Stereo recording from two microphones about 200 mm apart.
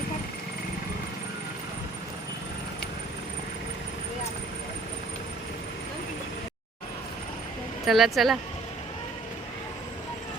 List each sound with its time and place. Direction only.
7.9 s speech: centre (ahead or behind)